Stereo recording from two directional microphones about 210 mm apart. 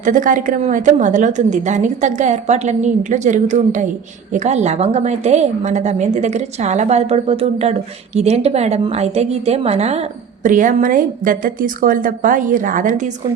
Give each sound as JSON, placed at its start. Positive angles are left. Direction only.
{"t": 0.0, "sound": "a woman's voice", "side_deg": -40}